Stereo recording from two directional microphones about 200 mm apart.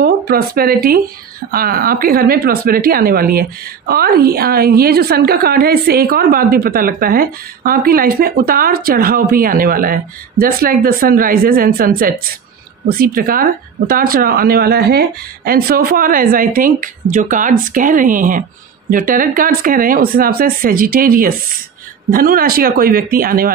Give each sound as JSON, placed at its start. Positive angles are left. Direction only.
{"t": 0.0, "sound": "speech", "side_deg": -50}